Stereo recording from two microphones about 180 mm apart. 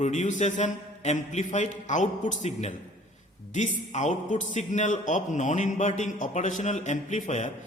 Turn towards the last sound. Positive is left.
turn(degrees=45)  # may be behind; listen again after turning